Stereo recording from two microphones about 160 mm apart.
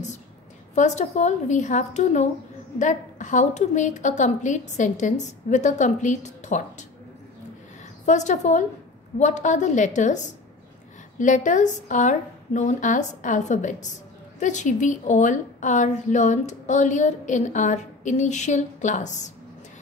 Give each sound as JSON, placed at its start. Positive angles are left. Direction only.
{"t": 0.7, "sound": "a woman's voice", "side_deg": 45}
{"t": 8.0, "sound": "a woman's voice", "side_deg": 50}